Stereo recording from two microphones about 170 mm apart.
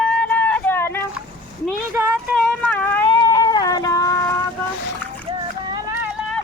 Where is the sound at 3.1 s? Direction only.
25° left (ahead or behind).